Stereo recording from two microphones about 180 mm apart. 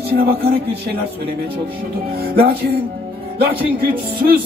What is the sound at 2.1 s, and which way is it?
Music, 60° right (ahead or behind).